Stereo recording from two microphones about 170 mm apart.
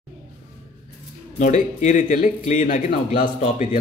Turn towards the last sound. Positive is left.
turn(degrees=50)  # may be behind; listen again after turning